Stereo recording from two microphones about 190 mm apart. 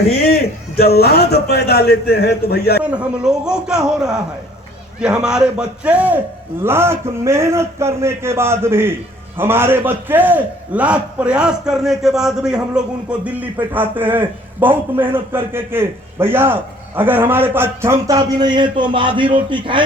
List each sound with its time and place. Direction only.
0.1 s a man's voice: 55° left (ahead or behind)
2.8 s a man's voice: 5° right (ahead or behind); by 19.8 s 25° right (ahead or behind)